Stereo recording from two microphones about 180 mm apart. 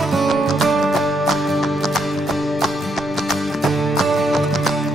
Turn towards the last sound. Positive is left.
turn(degrees=0)  # may be behind; listen again after turning